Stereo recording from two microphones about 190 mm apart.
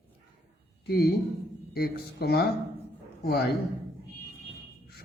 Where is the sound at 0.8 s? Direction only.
55° left (ahead or behind).